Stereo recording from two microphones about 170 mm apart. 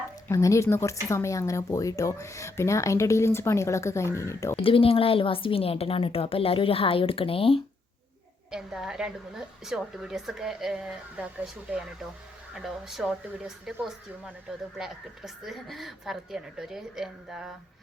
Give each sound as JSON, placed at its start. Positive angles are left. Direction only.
{"t": 0.3, "sound": "speech", "side_deg": 15}
{"t": 4.5, "sound": "a woman's voice", "side_deg": 30}
{"t": 8.4, "sound": "a woman's voice", "side_deg": -5}